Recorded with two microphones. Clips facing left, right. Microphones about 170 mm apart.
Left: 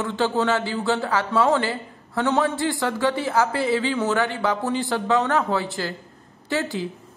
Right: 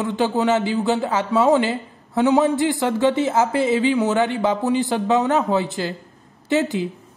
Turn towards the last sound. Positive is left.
turn(degrees=-20)  # may be behind; listen again after turning